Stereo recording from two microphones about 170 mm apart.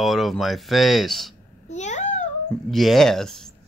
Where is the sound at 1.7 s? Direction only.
45° left (ahead or behind).